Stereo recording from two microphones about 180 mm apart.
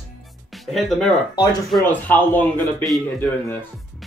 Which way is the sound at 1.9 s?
10° left (ahead or behind).